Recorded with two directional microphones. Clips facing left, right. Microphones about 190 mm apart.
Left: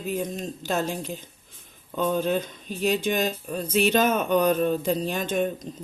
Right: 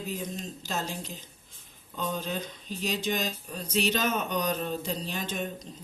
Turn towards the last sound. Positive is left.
turn(degrees=50)  # may be behind; listen again after turning